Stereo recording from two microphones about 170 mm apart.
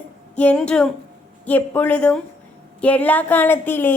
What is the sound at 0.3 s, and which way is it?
A woman's voice, 5° left (ahead or behind).